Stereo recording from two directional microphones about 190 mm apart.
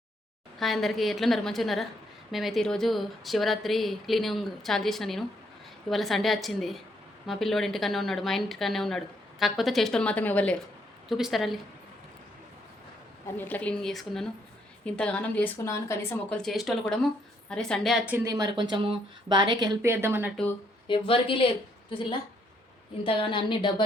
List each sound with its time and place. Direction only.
0.6 s a woman's voice: centre (ahead or behind)
13.2 s a woman's voice: 10° left (ahead or behind); by 20.3 s 10° right (ahead or behind)
20.3 s a woman's voice: 5° left (ahead or behind)
20.8 s a woman's voice: 25° left (ahead or behind)
23.0 s a woman's voice: 25° left (ahead or behind)